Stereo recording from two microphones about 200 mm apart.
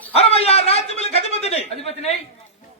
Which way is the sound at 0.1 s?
30° left (ahead or behind).